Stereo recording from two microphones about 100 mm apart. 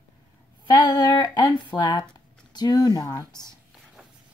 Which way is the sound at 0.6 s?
45° left (ahead or behind).